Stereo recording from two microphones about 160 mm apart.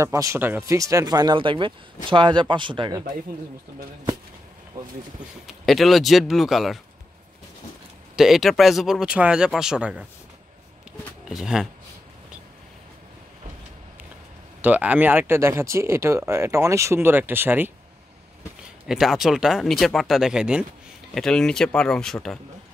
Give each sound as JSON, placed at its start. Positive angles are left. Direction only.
{"t": 0.0, "sound": "speech", "side_deg": -20}
{"t": 4.7, "sound": "speech", "side_deg": -20}
{"t": 5.5, "sound": "speech", "side_deg": 0}
{"t": 8.2, "sound": "speech", "side_deg": 0}
{"t": 11.2, "sound": "speech", "side_deg": -5}
{"t": 14.6, "sound": "speech", "side_deg": -10}
{"t": 18.9, "sound": "speech", "side_deg": 0}